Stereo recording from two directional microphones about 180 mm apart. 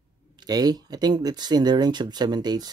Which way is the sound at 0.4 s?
20° right (ahead or behind).